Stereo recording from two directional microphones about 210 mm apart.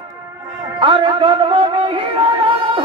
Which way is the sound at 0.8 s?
25° right (ahead or behind).